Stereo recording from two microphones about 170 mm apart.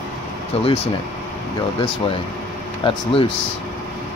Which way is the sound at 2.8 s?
30° left (ahead or behind).